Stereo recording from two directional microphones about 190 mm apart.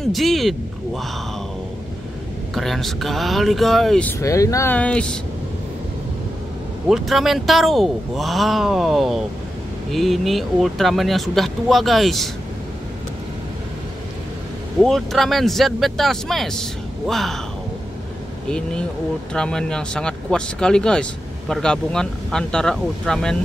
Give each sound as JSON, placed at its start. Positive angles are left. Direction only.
{"t": 0.0, "sound": "speech", "side_deg": 0}
{"t": 2.5, "sound": "speech", "side_deg": 0}
{"t": 4.2, "sound": "speech", "side_deg": 15}
{"t": 6.9, "sound": "speech", "side_deg": 0}
{"t": 14.8, "sound": "speech", "side_deg": 0}
{"t": 19.3, "sound": "speech", "side_deg": 5}